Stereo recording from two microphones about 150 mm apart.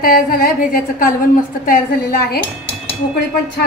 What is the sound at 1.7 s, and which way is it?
Speech, 85° left.